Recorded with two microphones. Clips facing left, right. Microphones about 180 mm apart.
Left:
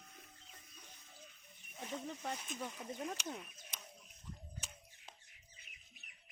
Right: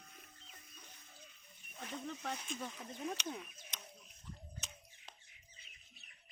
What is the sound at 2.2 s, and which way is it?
Speech, 5° left (ahead or behind).